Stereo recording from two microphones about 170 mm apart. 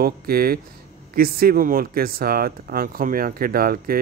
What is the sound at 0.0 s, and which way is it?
Speech, 60° right (ahead or behind).